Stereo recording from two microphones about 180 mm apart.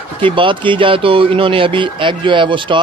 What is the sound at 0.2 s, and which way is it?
Speech, 30° right (ahead or behind).